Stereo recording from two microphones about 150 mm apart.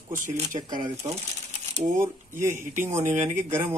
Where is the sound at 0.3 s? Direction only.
25° right (ahead or behind).